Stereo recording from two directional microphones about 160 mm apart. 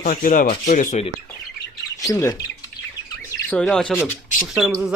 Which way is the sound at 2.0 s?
20° left (ahead or behind).